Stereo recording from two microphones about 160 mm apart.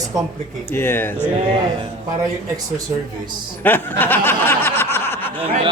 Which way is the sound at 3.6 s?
10° left (ahead or behind).